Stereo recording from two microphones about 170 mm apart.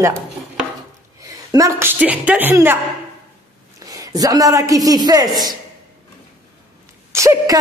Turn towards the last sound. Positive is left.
turn(degrees=-15)  # may be behind; listen again after turning